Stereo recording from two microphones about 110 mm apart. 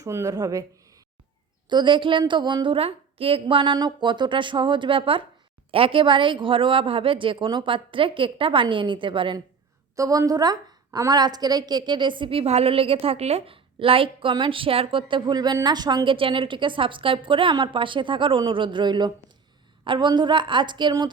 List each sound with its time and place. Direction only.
0.0 s speech: 30° right (ahead or behind)
1.7 s a woman's voice: 45° right (ahead or behind)
3.4 s a woman's voice: 45° right (ahead or behind)
9.9 s a woman's voice: 30° right (ahead or behind)